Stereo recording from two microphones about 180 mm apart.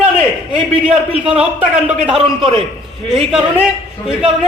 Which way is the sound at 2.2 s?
30° right (ahead or behind).